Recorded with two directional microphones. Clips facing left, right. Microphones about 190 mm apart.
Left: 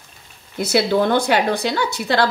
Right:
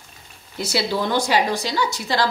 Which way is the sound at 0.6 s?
55° left (ahead or behind).